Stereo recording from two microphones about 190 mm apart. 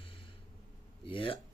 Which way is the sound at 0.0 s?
30° left (ahead or behind).